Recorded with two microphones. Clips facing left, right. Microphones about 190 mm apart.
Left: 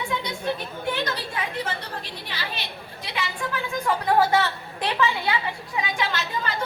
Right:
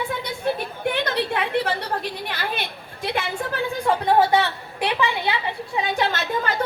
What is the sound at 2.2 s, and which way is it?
A woman's voice, 55° right (ahead or behind).